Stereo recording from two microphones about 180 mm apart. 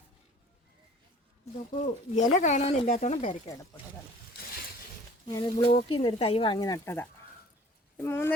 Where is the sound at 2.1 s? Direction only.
40° left (ahead or behind).